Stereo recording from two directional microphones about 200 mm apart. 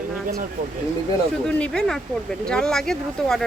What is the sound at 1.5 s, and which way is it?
Speech, 5° left (ahead or behind).